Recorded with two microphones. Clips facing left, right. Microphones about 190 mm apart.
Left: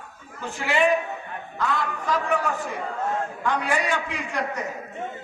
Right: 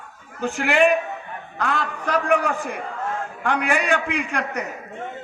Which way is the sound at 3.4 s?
75° right (ahead or behind).